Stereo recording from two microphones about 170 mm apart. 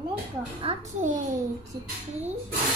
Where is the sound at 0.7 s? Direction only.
35° right (ahead or behind).